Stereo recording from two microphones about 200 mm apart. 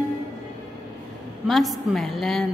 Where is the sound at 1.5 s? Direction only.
Centre (ahead or behind).